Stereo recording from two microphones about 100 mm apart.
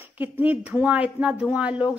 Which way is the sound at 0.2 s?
15° right (ahead or behind).